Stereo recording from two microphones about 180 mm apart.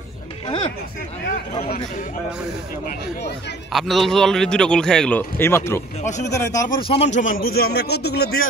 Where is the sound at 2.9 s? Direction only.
65° left (ahead or behind).